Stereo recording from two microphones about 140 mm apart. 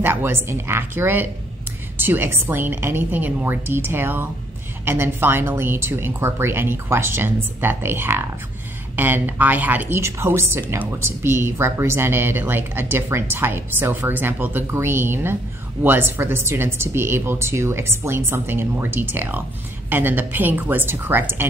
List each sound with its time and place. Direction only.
0.0 s speech: 15° right (ahead or behind)